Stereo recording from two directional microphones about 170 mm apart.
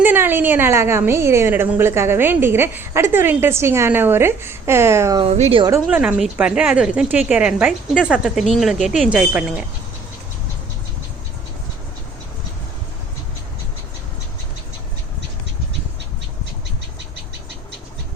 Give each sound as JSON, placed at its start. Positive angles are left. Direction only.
{"t": 0.0, "sound": "a woman's voice", "side_deg": -10}
{"t": 5.2, "sound": "speech", "side_deg": -35}
{"t": 5.8, "sound": "a woman's voice", "side_deg": -10}